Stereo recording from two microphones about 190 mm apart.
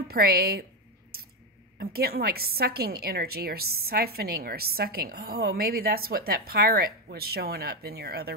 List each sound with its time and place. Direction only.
0.1 s a woman's voice: 55° right (ahead or behind)
1.8 s a woman's voice: 55° right (ahead or behind)